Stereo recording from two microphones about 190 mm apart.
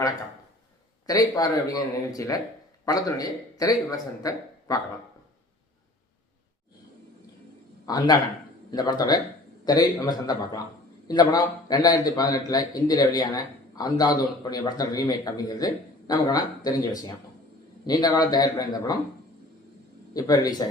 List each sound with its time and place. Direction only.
1.0 s a man's voice: 20° left (ahead or behind)
7.9 s a man's voice: 20° left (ahead or behind)
20.1 s a man's voice: 20° left (ahead or behind)